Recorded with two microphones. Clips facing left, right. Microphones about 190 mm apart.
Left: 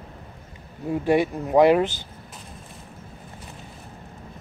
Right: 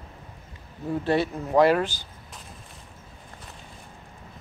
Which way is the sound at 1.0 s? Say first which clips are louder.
Left 4 dB; 15° left (ahead or behind).